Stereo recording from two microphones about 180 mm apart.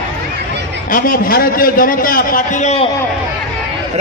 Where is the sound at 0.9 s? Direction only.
50° left (ahead or behind).